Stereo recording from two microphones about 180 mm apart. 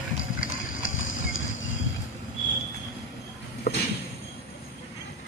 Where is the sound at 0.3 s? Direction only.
90° left.